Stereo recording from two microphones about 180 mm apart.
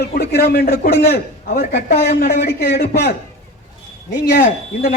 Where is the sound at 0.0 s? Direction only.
60° left (ahead or behind).